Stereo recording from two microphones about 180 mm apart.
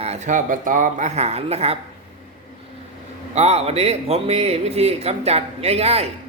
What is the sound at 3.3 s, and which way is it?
Speech, 35° right (ahead or behind).